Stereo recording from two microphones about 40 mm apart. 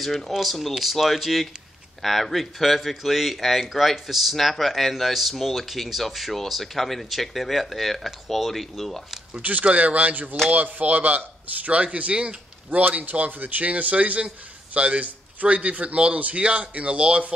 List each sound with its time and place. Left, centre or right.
0.0 s speech: centre
9.4 s a man's voice: right
12.7 s a man's voice: right